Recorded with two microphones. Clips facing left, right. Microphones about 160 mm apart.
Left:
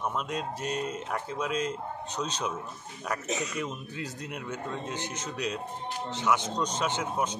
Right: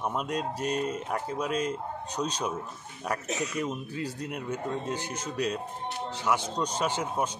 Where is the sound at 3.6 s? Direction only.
10° right (ahead or behind).